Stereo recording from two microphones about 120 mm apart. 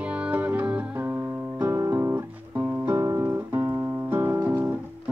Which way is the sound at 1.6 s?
20° right (ahead or behind).